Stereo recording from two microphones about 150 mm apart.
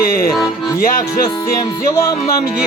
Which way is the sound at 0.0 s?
70° left (ahead or behind).